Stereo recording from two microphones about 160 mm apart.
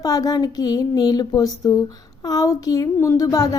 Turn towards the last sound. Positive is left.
turn(degrees=20)  # may be behind; listen again after turning